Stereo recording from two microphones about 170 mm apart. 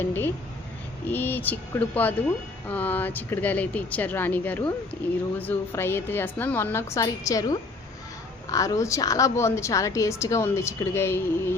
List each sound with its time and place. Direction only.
0.0 s a woman's voice: 10° left (ahead or behind)